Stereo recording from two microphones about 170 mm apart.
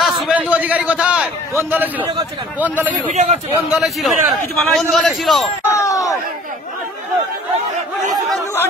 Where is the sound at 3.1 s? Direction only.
40° right (ahead or behind).